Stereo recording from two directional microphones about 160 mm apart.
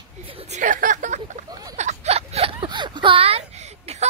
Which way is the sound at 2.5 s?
30° right (ahead or behind).